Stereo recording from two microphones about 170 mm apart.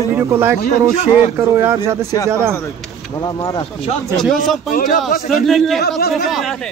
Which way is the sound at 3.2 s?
25° left (ahead or behind).